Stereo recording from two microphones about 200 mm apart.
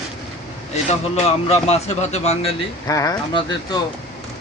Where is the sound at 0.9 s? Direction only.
35° left (ahead or behind).